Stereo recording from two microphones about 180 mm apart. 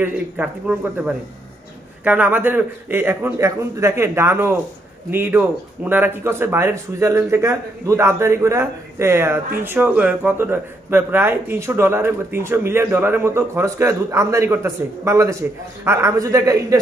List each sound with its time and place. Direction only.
0.0 s a man's voice: 10° right (ahead or behind)